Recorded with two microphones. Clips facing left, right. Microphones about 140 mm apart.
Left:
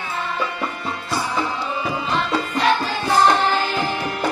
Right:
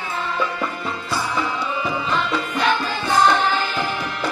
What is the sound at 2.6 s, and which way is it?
Music, centre (ahead or behind).